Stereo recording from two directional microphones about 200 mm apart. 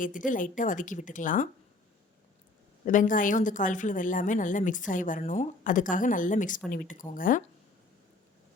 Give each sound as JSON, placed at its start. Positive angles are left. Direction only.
{"t": 0.3, "sound": "a woman's voice", "side_deg": 40}
{"t": 2.8, "sound": "a woman's voice", "side_deg": 40}